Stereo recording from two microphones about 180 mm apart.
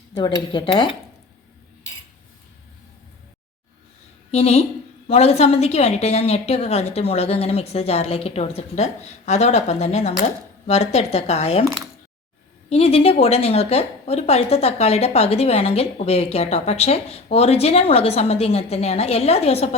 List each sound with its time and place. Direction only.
0.2 s speech: 25° left (ahead or behind)
4.3 s a woman's voice: 35° left (ahead or behind)
12.7 s a woman's voice: 35° left (ahead or behind)